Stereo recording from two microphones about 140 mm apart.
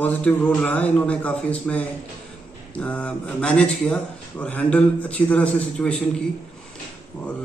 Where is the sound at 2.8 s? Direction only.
10° left (ahead or behind).